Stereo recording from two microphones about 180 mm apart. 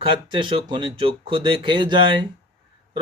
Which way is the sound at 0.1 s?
25° right (ahead or behind).